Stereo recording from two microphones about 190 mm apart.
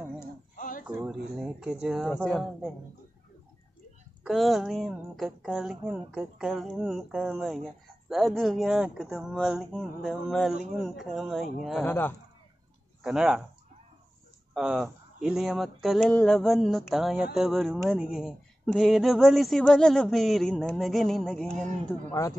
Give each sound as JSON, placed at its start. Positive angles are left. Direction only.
{"t": 0.6, "sound": "a sound", "side_deg": 45}
{"t": 0.8, "sound": "speech", "side_deg": -5}
{"t": 4.2, "sound": "speech", "side_deg": 0}
{"t": 13.0, "sound": "speech", "side_deg": -5}
{"t": 14.5, "sound": "speech", "side_deg": 0}